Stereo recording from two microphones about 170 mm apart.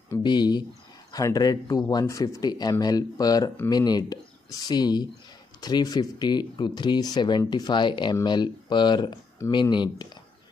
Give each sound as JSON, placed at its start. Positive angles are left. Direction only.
{"t": 0.1, "sound": "speech", "side_deg": 25}